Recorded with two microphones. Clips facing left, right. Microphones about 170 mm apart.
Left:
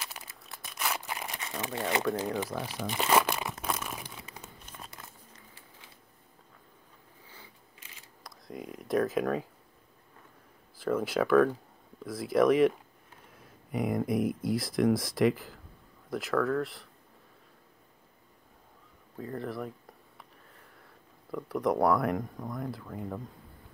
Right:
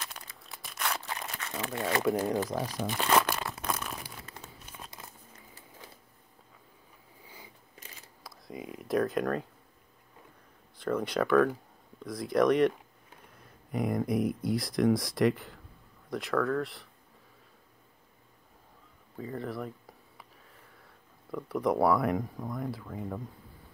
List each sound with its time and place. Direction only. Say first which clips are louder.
0.0 s crumpling: even; 5° left (ahead or behind)
2.0 s speech: right 3 dB; 15° right (ahead or behind)
2.8 s crumpling: left 1 dB; 5° left (ahead or behind)
7.2 s a sound: right 3 dB; 15° right (ahead or behind)
8.2 s speech: even; centre (ahead or behind)
10.8 s speech: left 1 dB; 5° left (ahead or behind)
19.1 s speech: even; centre (ahead or behind)